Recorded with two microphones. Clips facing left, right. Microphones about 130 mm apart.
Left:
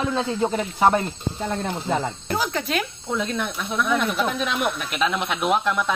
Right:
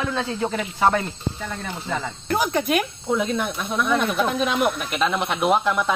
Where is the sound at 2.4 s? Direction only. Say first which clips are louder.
Right 4 dB; 15° right (ahead or behind).